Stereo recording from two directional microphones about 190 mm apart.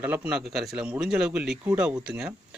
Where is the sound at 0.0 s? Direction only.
10° right (ahead or behind).